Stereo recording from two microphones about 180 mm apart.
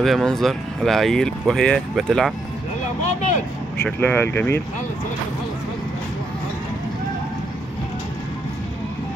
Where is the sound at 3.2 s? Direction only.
40° left (ahead or behind).